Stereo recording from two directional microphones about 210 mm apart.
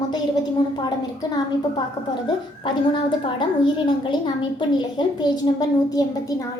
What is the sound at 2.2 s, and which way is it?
A woman's voice, 25° left (ahead or behind).